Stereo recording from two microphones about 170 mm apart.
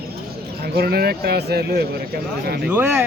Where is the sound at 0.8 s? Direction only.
65° right (ahead or behind).